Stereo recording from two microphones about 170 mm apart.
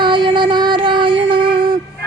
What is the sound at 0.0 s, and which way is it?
Music, 30° right (ahead or behind).